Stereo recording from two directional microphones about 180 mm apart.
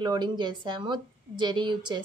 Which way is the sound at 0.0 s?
25° right (ahead or behind).